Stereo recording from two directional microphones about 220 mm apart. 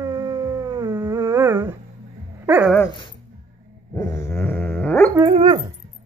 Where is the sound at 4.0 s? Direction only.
15° left (ahead or behind).